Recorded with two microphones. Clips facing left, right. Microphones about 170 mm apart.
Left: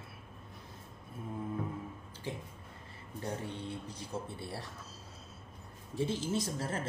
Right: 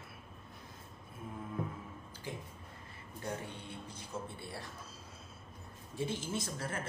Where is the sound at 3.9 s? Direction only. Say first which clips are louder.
Left 3 dB; 35° left (ahead or behind).